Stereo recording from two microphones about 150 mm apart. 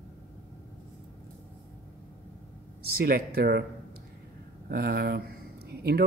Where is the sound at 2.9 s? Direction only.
90° right.